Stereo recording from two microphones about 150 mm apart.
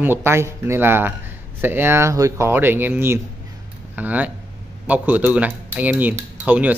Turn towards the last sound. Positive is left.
turn(degrees=-10)  # may be behind; listen again after turning